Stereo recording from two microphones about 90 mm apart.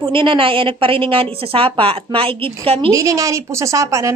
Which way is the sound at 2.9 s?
40° right (ahead or behind).